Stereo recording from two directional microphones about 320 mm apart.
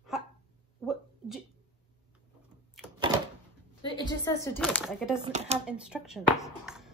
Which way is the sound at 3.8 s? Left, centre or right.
Centre.